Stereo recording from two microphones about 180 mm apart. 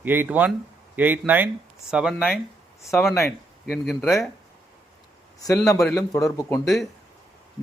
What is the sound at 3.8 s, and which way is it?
Speech, centre (ahead or behind).